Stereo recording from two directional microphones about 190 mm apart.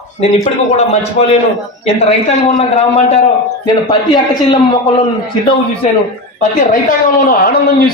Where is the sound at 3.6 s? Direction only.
25° left (ahead or behind).